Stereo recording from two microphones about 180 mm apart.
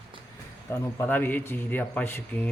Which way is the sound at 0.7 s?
15° left (ahead or behind).